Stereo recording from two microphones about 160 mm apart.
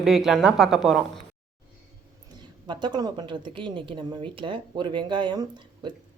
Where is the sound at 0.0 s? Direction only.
Centre (ahead or behind).